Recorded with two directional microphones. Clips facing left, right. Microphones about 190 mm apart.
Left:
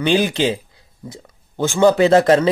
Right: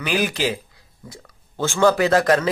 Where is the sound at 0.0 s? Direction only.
25° left (ahead or behind).